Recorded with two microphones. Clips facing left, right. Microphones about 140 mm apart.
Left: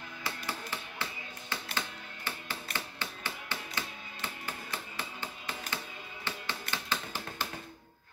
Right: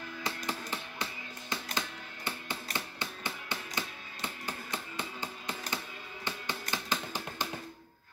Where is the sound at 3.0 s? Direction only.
15° right (ahead or behind).